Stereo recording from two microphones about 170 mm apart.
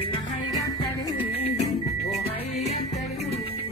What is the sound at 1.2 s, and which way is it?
Music, 35° left (ahead or behind).